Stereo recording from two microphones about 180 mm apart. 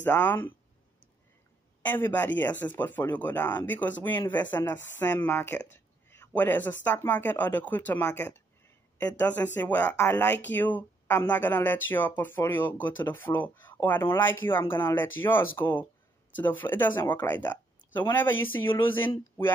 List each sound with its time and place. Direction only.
0.0 s speech: 10° left (ahead or behind)
1.9 s speech: 10° left (ahead or behind)
18.7 s speech: 30° left (ahead or behind)
18.9 s speech: 10° left (ahead or behind)